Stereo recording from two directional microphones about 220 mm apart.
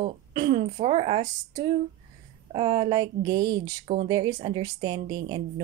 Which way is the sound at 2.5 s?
25° right (ahead or behind).